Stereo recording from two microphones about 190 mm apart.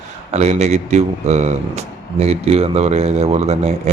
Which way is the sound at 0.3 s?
35° right (ahead or behind).